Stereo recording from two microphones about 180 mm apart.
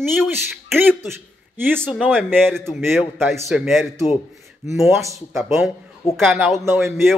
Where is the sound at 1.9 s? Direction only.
Centre (ahead or behind).